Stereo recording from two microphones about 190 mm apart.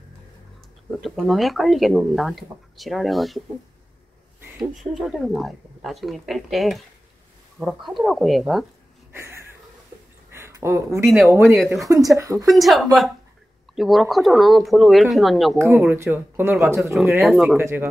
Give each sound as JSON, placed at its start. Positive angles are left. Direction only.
{"t": 1.0, "sound": "speech", "side_deg": 0}
{"t": 4.6, "sound": "speech", "side_deg": 0}
{"t": 9.1, "sound": "a sound", "side_deg": -15}
{"t": 11.2, "sound": "speech", "side_deg": -15}
{"t": 11.6, "sound": "speech", "side_deg": 0}
{"t": 12.2, "sound": "a woman's voice", "side_deg": -15}
{"t": 12.4, "sound": "speech", "side_deg": 0}
{"t": 15.5, "sound": "speech", "side_deg": -15}
{"t": 17.2, "sound": "speech", "side_deg": 0}
{"t": 17.6, "sound": "speech", "side_deg": -10}